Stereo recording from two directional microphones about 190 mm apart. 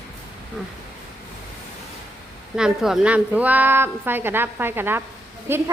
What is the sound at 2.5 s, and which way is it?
A woman's voice, 5° right (ahead or behind).